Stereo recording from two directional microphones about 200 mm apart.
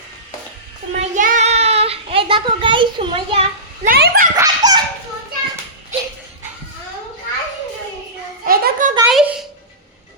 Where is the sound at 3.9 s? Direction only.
45° right (ahead or behind).